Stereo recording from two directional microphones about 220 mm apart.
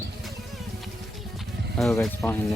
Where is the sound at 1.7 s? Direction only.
Centre (ahead or behind).